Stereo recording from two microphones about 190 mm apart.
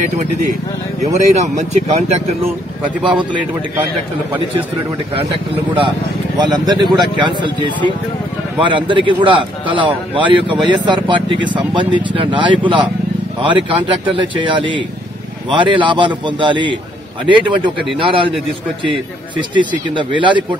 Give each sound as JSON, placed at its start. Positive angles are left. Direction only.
{"t": 1.1, "sound": "speech", "side_deg": -40}
{"t": 6.4, "sound": "speech", "side_deg": -20}
{"t": 19.5, "sound": "speech", "side_deg": -25}